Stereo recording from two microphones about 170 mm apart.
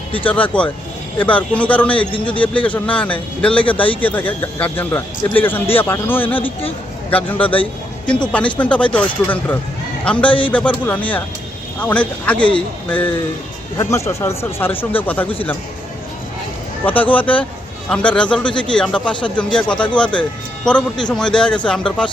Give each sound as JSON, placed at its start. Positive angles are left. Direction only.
{"t": 0.3, "sound": "a man's voice", "side_deg": 10}
{"t": 6.4, "sound": "speech", "side_deg": 35}
{"t": 7.1, "sound": "a man's voice", "side_deg": 10}
{"t": 16.8, "sound": "a man's voice", "side_deg": 10}
{"t": 18.4, "sound": "speech", "side_deg": 30}
{"t": 18.8, "sound": "a man's voice", "side_deg": 5}